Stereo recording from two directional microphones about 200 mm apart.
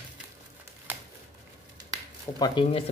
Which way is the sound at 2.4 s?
25° left (ahead or behind).